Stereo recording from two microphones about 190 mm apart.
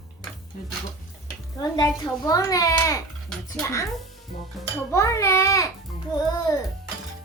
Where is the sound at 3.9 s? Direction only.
Centre (ahead or behind).